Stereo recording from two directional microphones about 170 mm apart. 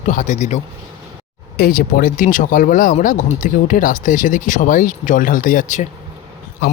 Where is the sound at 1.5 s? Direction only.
60° left (ahead or behind).